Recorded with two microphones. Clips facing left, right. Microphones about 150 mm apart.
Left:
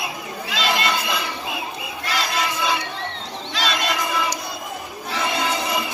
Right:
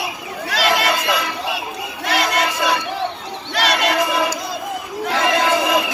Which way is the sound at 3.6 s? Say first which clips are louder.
Right 6 dB; 65° right (ahead or behind).